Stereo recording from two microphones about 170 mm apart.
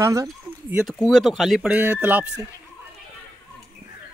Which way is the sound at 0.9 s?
5° left (ahead or behind).